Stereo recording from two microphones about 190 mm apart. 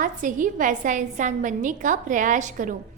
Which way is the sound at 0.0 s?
45° right (ahead or behind).